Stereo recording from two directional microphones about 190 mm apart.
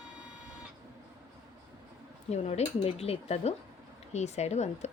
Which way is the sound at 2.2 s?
35° left (ahead or behind).